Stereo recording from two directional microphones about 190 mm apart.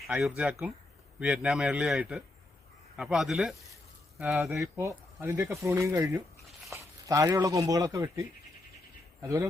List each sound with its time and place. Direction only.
0.1 s a man's voice: 5° right (ahead or behind)
4.6 s speech: 15° right (ahead or behind)
9.2 s speech: 15° right (ahead or behind)